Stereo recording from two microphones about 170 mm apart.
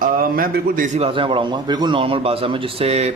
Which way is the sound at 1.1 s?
30° right (ahead or behind).